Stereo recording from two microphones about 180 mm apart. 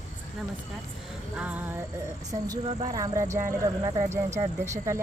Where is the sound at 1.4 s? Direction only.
10° right (ahead or behind).